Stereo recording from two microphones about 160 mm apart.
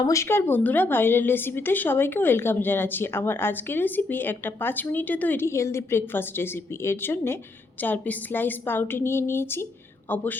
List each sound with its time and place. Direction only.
0.0 s speech: 20° left (ahead or behind)